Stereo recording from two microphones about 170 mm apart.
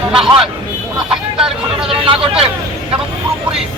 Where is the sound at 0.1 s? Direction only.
5° right (ahead or behind).